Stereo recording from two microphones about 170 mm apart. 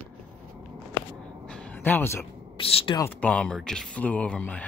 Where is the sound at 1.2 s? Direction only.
5° left (ahead or behind).